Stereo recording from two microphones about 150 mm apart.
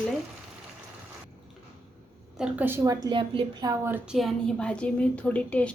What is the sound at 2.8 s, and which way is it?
Speech, 30° right (ahead or behind).